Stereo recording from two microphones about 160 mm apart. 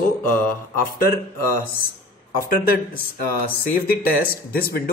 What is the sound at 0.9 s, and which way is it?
Speech, 65° left (ahead or behind).